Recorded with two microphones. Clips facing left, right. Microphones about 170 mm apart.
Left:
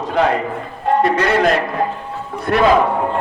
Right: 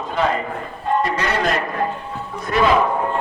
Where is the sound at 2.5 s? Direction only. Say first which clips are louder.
Left 3 dB; 60° left (ahead or behind).